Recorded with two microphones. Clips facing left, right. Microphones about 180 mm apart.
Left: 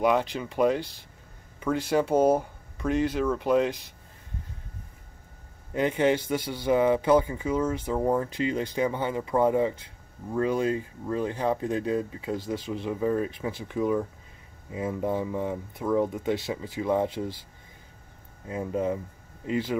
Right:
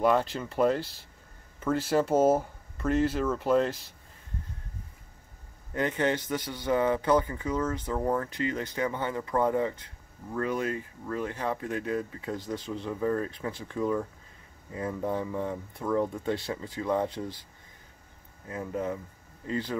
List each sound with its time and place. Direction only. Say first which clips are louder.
0.0 s speech: left 1 dB; centre (ahead or behind)
5.7 s speech: left 4 dB; 15° left (ahead or behind)
18.5 s speech: left 4 dB; 20° left (ahead or behind)